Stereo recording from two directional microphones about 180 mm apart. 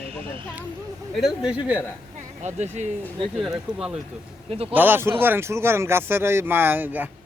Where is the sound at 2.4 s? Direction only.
40° right (ahead or behind).